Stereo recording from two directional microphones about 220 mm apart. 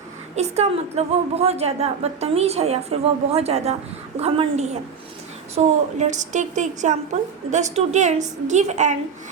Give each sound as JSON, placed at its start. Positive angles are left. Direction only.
{"t": 0.3, "sound": "a woman's voice", "side_deg": -30}